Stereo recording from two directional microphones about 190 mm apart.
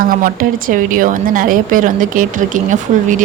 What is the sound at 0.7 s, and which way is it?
A woman's voice, 45° right (ahead or behind).